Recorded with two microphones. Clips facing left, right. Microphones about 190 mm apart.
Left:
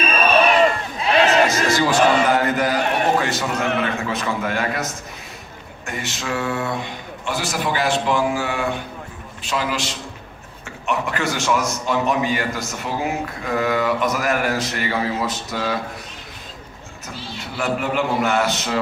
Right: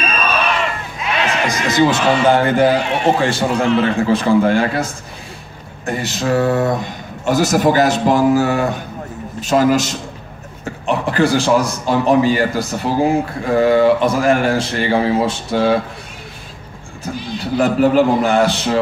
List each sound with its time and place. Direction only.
0.3 s crowd: 35° left (ahead or behind)
1.5 s music: 20° right (ahead or behind)
2.2 s a man's voice: 30° right (ahead or behind); by 9.9 s 45° right (ahead or behind)
10.6 s a man's voice: 30° right (ahead or behind)
17.1 s a man's voice: 15° right (ahead or behind)
17.4 s a man's voice: 35° right (ahead or behind)